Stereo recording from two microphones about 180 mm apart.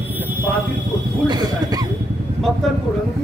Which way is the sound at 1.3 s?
20° right (ahead or behind).